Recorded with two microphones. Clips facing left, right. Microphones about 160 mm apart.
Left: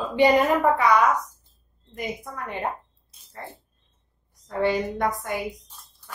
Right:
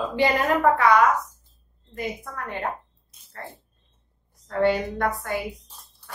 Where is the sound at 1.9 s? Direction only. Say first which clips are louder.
Right 1 dB; 15° left (ahead or behind).